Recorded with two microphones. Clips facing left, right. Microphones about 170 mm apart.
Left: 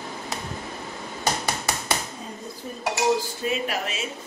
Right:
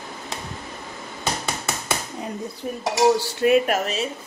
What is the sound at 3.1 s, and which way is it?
Speech, 70° right (ahead or behind).